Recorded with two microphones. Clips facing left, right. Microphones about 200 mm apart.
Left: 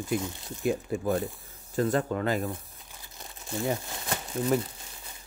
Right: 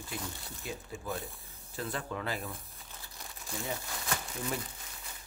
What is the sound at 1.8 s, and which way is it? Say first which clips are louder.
Speech: left 11 dB; 45° left (ahead or behind).